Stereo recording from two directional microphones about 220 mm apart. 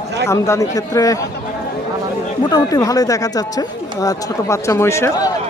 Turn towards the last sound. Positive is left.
turn(degrees=10)  # may be behind; listen again after turning